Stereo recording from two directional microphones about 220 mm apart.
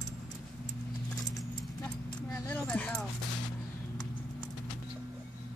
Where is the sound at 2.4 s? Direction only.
5° left (ahead or behind).